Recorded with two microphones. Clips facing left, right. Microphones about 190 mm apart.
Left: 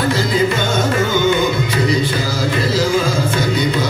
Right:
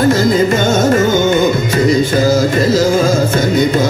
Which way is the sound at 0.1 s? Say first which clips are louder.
Right 5 dB; 45° right (ahead or behind).